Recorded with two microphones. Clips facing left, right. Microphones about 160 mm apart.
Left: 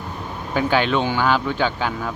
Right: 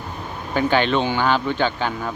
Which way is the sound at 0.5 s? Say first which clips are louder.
Right 1 dB; 5° left (ahead or behind).